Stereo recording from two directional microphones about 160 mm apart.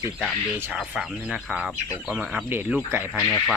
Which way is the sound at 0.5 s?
10° right (ahead or behind).